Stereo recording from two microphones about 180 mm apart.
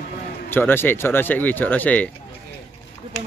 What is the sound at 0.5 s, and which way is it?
Speech, 10° left (ahead or behind).